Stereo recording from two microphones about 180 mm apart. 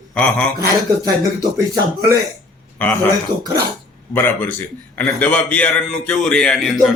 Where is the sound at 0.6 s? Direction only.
20° right (ahead or behind).